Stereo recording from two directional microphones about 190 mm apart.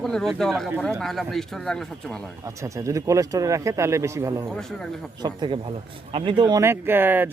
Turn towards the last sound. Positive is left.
turn(degrees=-10)  # may be behind; listen again after turning